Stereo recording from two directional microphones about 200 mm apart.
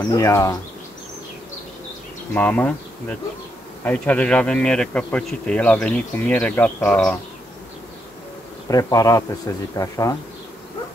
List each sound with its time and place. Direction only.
0.0 s insect: 15° left (ahead or behind)
2.3 s insect: 5° left (ahead or behind)
3.8 s speech: 5° left (ahead or behind)
8.6 s insect: 15° left (ahead or behind)